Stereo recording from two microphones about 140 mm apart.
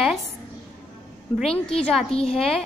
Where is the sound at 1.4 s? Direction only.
5° left (ahead or behind).